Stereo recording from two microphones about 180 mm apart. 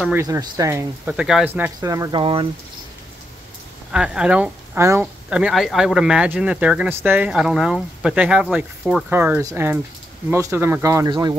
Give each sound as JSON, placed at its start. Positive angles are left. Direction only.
{"t": 0.2, "sound": "speech", "side_deg": -20}
{"t": 1.8, "sound": "speech", "side_deg": -20}
{"t": 3.9, "sound": "speech", "side_deg": -5}